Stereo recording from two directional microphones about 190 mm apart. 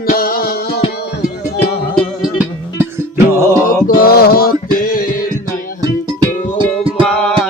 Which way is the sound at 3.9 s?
50° left (ahead or behind).